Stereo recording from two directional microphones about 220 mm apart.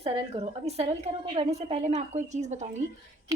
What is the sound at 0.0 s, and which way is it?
A woman's voice, 30° right (ahead or behind).